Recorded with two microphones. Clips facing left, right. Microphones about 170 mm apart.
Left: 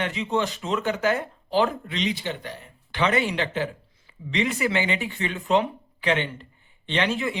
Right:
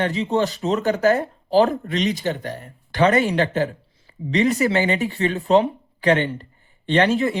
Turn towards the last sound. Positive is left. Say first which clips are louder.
# right 7 dB
turn(degrees=-40)  # may be behind; listen again after turning